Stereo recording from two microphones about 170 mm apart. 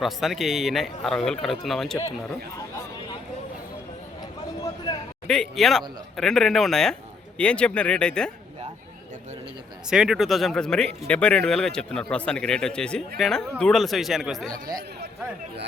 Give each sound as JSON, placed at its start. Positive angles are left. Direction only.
{"t": 0.0, "sound": "speech", "side_deg": 0}
{"t": 5.3, "sound": "speech", "side_deg": 5}
{"t": 9.9, "sound": "speech", "side_deg": -5}